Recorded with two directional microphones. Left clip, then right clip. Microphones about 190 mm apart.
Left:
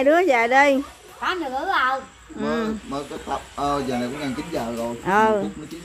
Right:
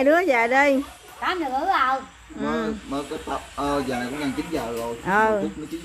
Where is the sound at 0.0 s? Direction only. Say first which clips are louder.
Left 1 dB; 5° left (ahead or behind).